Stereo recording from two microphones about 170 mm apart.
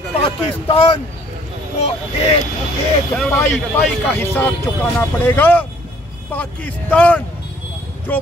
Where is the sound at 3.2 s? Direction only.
10° left (ahead or behind).